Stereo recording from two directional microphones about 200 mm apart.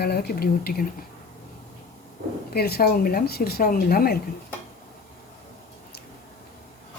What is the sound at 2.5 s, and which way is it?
A woman's voice, 50° left (ahead or behind).